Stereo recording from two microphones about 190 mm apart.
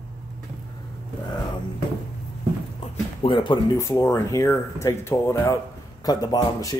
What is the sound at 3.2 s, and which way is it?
Speech, 25° left (ahead or behind).